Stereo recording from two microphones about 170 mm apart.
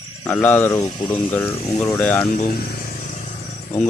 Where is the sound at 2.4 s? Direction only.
55° left (ahead or behind).